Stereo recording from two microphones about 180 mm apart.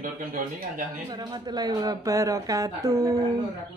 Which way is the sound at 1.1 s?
25° right (ahead or behind).